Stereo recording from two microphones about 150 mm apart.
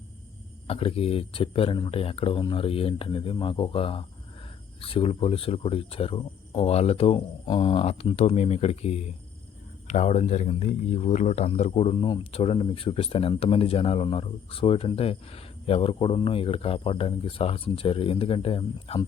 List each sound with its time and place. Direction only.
0.7 s speech: 40° left (ahead or behind)